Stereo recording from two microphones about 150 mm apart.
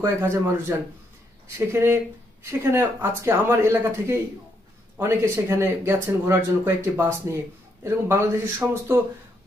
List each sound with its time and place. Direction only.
0.0 s speech: 15° right (ahead or behind)